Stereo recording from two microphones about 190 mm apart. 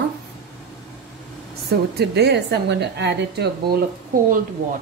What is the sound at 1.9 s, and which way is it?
Speech, 60° right (ahead or behind).